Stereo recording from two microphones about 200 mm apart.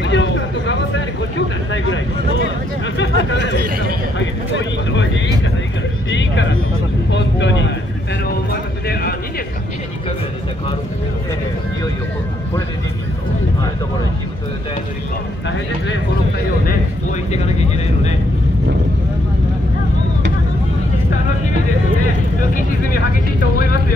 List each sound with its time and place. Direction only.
0.0 s vehicle: 65° left (ahead or behind)
3.0 s a sound: 65° left (ahead or behind)
6.0 s vehicle: 65° left (ahead or behind)
17.3 s vehicle: 35° left (ahead or behind)